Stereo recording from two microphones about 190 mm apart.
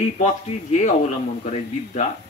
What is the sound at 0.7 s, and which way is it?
Speech, 40° left (ahead or behind).